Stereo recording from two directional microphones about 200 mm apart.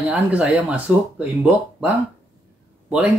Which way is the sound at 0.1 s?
5° right (ahead or behind).